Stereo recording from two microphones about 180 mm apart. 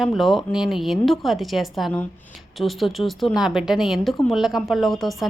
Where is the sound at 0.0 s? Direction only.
Centre (ahead or behind).